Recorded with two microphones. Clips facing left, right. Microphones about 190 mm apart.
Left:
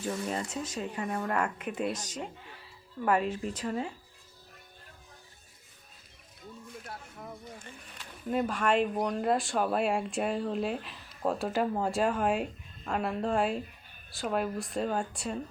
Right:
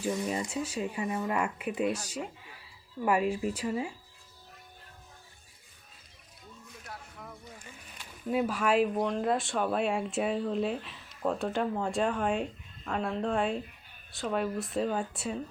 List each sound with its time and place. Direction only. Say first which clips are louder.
0.0 s speech: right 2 dB; 10° right (ahead or behind)
6.8 s a sound: right 1 dB; 25° left (ahead or behind)
8.3 s speech: even; 5° right (ahead or behind)